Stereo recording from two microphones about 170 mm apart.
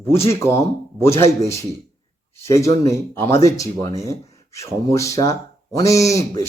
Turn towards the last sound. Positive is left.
turn(degrees=20)  # may be behind; listen again after turning